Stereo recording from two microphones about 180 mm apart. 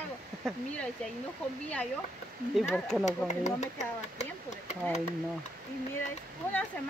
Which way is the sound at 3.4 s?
40° left (ahead or behind).